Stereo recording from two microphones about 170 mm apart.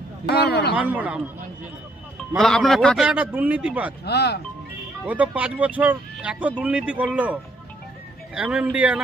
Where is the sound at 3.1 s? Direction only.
10° right (ahead or behind).